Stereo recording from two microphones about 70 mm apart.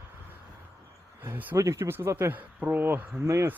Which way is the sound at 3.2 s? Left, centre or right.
Right.